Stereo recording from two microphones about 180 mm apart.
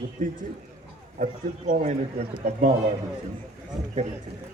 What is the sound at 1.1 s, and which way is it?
A man's voice, 45° right (ahead or behind).